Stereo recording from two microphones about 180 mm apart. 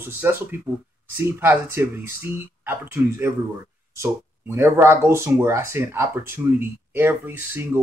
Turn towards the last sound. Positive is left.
turn(degrees=-10)  # may be behind; listen again after turning